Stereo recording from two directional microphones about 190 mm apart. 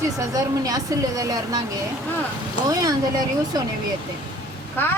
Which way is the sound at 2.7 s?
20° right (ahead or behind).